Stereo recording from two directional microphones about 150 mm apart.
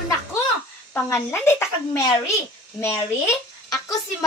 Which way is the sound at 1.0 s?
15° left (ahead or behind).